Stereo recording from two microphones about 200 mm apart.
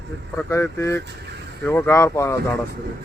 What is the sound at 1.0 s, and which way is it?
Speech, 55° right (ahead or behind).